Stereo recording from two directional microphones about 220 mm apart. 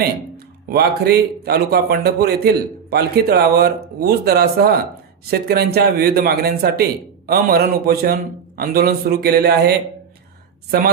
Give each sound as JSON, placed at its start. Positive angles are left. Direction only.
{"t": 0.7, "sound": "a man's voice", "side_deg": -45}